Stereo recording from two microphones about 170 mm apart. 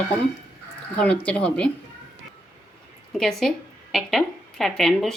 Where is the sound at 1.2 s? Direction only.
5° left (ahead or behind).